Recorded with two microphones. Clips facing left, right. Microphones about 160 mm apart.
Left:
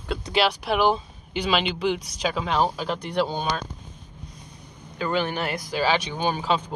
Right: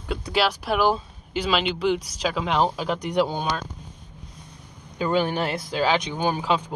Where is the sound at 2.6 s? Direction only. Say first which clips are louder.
Right 2 dB; 15° right (ahead or behind).